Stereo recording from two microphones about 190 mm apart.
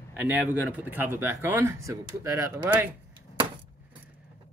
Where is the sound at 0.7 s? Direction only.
10° right (ahead or behind).